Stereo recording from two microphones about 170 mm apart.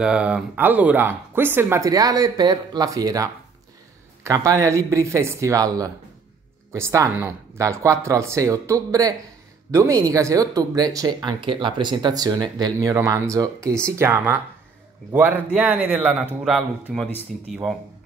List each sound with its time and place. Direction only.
0.0 s speech: 5° right (ahead or behind)